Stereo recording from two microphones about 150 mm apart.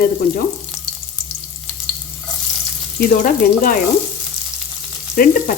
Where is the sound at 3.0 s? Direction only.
70° left (ahead or behind).